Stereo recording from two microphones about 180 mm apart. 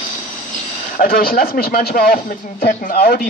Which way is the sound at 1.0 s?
55° left (ahead or behind).